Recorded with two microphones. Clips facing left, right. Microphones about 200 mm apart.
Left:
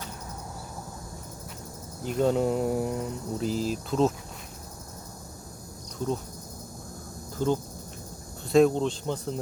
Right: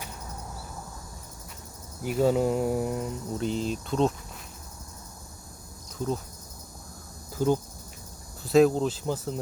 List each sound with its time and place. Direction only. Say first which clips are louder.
2.0 s mantra: right 1 dB; 5° right (ahead or behind)
7.3 s speech: right 2 dB; 10° right (ahead or behind)
8.4 s mantra: even; centre (ahead or behind)